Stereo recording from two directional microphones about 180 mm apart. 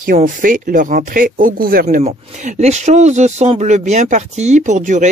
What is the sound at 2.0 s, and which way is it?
Speech, 40° right (ahead or behind).